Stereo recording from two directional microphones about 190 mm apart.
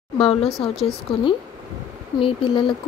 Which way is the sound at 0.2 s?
30° left (ahead or behind).